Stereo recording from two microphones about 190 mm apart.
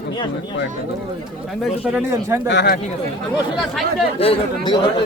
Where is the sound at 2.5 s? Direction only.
60° left (ahead or behind).